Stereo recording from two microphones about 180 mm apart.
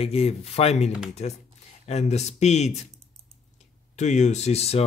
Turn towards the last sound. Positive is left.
turn(degrees=35)  # may be behind; listen again after turning